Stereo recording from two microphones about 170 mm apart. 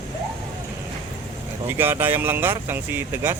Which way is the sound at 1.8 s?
10° right (ahead or behind).